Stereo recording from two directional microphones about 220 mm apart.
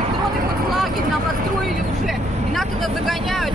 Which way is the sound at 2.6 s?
Centre (ahead or behind).